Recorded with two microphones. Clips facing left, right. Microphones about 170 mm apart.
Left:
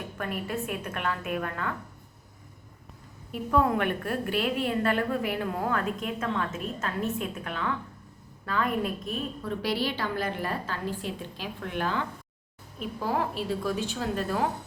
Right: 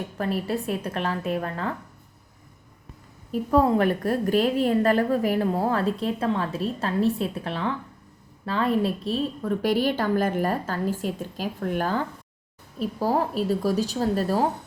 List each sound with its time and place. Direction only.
0.2 s a woman's voice: 35° right (ahead or behind)
3.3 s a woman's voice: 35° right (ahead or behind)
9.4 s a woman's voice: 45° right (ahead or behind)